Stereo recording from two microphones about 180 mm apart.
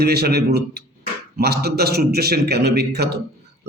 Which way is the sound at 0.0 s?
60° right (ahead or behind).